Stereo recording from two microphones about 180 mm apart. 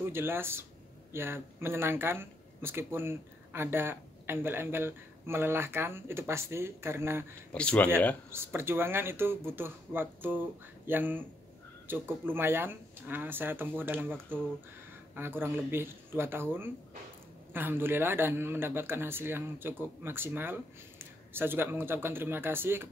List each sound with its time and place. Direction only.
0.0 s speech: 15° right (ahead or behind)
7.5 s speech: 5° left (ahead or behind)
8.3 s speech: 15° right (ahead or behind)
15.1 s speech: 10° right (ahead or behind)